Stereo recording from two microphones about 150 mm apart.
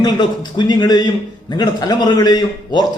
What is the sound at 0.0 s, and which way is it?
A man's voice, 30° left (ahead or behind).